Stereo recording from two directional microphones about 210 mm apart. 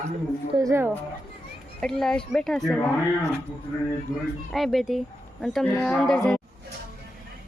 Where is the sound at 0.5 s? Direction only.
15° right (ahead or behind).